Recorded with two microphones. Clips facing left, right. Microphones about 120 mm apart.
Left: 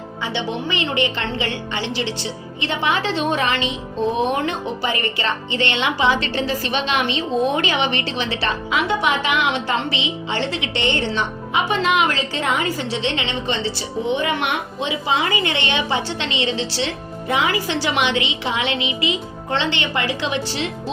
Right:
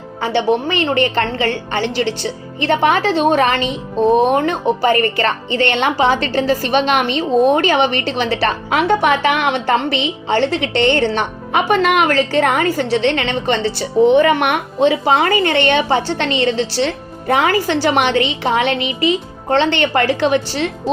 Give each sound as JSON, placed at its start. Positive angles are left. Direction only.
{"t": 0.2, "sound": "a woman's voice", "side_deg": -45}